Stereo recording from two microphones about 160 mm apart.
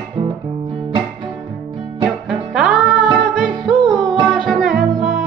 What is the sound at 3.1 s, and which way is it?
Music, 30° right (ahead or behind).